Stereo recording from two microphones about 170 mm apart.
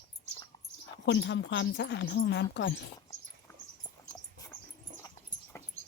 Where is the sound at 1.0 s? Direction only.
90° left.